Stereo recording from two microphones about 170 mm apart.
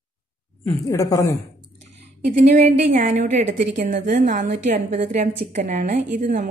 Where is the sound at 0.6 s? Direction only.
15° left (ahead or behind).